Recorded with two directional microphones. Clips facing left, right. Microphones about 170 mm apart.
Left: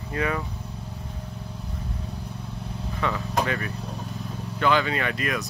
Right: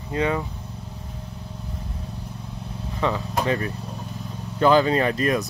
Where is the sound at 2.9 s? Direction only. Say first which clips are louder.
Right 4 dB; 25° right (ahead or behind).